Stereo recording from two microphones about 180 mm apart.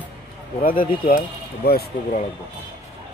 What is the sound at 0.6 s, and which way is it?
Speech, 50° left (ahead or behind).